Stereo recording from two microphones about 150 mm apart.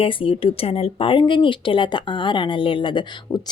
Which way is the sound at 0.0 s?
35° left (ahead or behind).